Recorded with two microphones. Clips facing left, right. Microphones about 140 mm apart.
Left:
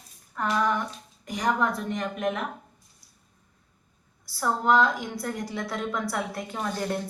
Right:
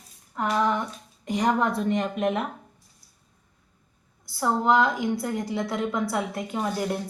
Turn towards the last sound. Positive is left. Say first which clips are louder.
# right 2 dB
turn(degrees=-10)  # may be behind; listen again after turning